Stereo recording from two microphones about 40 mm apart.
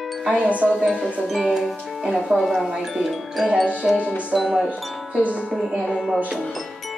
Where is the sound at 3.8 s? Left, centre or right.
Centre.